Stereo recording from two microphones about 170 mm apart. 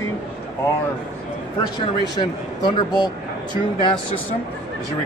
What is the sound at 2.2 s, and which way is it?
Speech, 25° left (ahead or behind).